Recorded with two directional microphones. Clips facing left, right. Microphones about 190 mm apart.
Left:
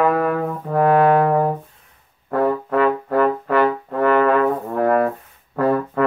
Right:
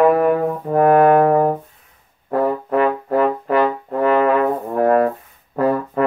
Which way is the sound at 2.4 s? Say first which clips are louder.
Left 1 dB; 20° right (ahead or behind).